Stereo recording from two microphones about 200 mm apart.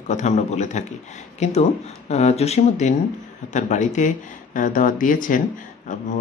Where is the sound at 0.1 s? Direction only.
35° left (ahead or behind).